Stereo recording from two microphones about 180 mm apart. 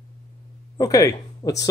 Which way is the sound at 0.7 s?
20° left (ahead or behind).